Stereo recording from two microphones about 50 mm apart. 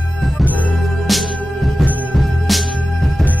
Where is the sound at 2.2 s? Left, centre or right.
Centre.